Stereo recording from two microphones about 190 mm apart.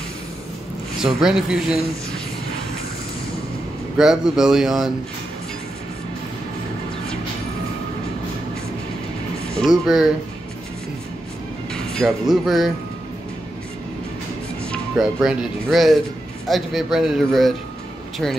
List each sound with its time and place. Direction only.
1.0 s speech: 5° right (ahead or behind)
4.0 s speech: 5° right (ahead or behind)
9.6 s speech: centre (ahead or behind)
11.7 s speech: 5° left (ahead or behind)
14.6 s speech: centre (ahead or behind)